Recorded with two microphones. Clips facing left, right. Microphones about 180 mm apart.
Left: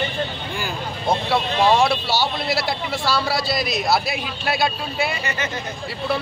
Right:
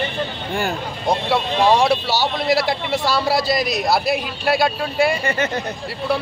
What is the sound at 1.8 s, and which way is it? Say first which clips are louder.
A man's voice: right 2 dB; 15° right (ahead or behind).